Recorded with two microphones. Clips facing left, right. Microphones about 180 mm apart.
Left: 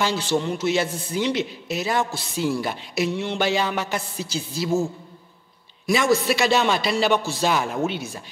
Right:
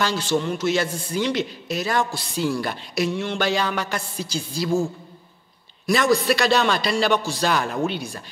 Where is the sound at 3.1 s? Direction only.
25° left (ahead or behind).